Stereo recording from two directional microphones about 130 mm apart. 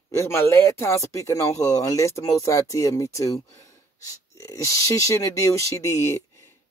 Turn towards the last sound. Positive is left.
turn(degrees=20)  # may be behind; listen again after turning